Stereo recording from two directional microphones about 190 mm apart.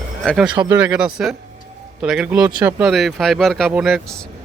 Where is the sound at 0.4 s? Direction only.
25° right (ahead or behind).